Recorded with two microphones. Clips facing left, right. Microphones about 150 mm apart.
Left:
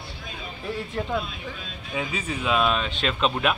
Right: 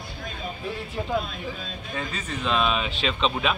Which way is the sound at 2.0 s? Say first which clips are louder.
Left 3 dB; 10° left (ahead or behind).